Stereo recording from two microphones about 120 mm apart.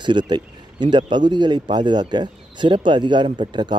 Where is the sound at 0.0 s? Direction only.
40° right (ahead or behind).